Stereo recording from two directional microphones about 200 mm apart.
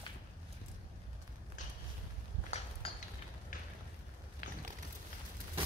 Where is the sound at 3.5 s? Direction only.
40° left (ahead or behind).